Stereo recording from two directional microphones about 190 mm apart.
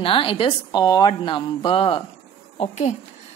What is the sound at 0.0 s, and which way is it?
A woman's voice, 30° left (ahead or behind).